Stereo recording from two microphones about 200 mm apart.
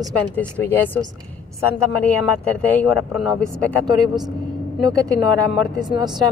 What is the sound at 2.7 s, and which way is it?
Speech, 5° left (ahead or behind).